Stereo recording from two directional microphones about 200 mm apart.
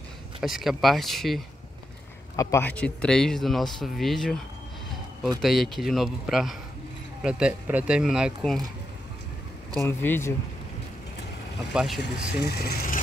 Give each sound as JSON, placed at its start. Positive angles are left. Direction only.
{"t": 0.4, "sound": "speech", "side_deg": 0}
{"t": 2.3, "sound": "speech", "side_deg": 10}
{"t": 5.4, "sound": "speech", "side_deg": 0}
{"t": 9.8, "sound": "speech", "side_deg": 10}
{"t": 11.7, "sound": "speech", "side_deg": 0}
{"t": 12.0, "sound": "speech", "side_deg": 55}